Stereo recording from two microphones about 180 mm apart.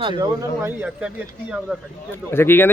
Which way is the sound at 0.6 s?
10° right (ahead or behind).